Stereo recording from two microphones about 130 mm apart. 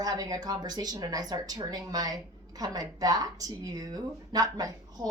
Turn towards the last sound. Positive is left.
turn(degrees=-30)  # may be behind; listen again after turning